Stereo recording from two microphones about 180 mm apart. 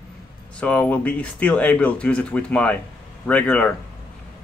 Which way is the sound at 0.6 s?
5° left (ahead or behind).